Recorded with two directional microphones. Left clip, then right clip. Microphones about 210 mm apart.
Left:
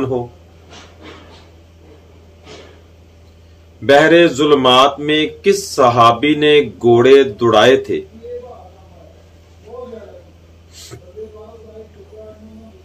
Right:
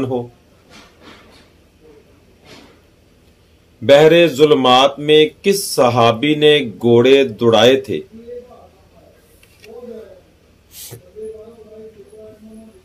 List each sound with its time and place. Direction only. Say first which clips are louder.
3.8 s speech: even; 40° right (ahead or behind)